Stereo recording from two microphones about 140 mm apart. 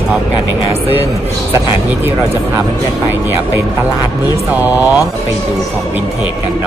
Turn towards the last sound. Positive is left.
turn(degrees=-10)  # may be behind; listen again after turning